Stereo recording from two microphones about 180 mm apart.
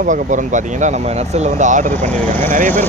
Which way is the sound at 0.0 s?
45° right (ahead or behind).